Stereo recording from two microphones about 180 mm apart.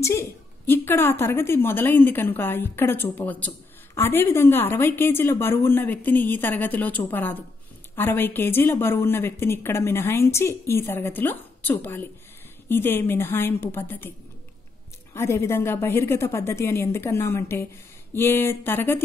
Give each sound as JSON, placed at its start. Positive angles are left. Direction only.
{"t": 0.0, "sound": "a woman's voice", "side_deg": 15}
{"t": 15.1, "sound": "a woman's voice", "side_deg": 15}